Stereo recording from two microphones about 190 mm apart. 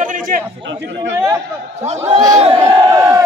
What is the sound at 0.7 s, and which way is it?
Speech, 75° right (ahead or behind).